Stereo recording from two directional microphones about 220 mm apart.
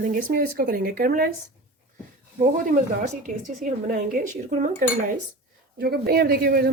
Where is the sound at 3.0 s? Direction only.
35° right (ahead or behind).